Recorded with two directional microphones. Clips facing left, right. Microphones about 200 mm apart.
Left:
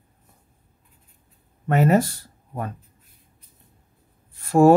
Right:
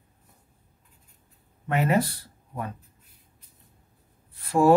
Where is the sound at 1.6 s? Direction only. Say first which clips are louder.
Left 5 dB; 45° left (ahead or behind).